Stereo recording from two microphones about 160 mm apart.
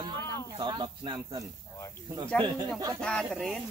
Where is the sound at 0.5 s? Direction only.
30° right (ahead or behind).